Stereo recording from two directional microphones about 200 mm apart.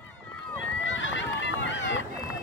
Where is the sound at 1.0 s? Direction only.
65° left (ahead or behind).